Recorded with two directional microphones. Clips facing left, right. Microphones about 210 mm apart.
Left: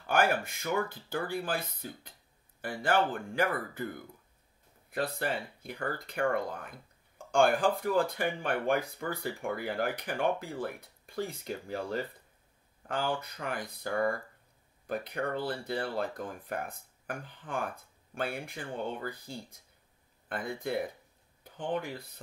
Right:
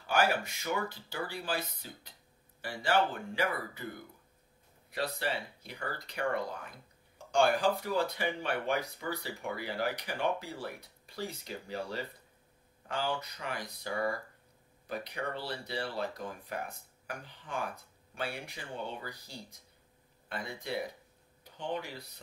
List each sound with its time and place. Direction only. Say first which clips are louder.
0.0 s speech: left 2 dB; 50° left (ahead or behind)
4.9 s speech: left 2 dB; 50° left (ahead or behind)